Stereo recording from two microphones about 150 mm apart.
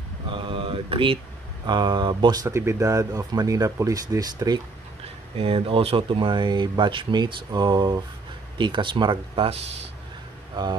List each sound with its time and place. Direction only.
0.3 s mantra: 35° right (ahead or behind)
1.7 s speech: 30° right (ahead or behind)
5.4 s speech: 40° right (ahead or behind)